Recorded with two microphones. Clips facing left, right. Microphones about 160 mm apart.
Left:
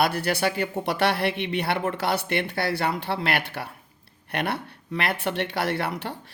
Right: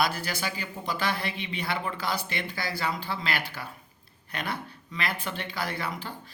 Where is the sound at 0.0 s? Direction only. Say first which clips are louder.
Left 6 dB; 65° left (ahead or behind).